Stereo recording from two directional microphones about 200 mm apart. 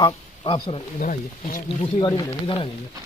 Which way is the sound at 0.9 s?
40° left (ahead or behind).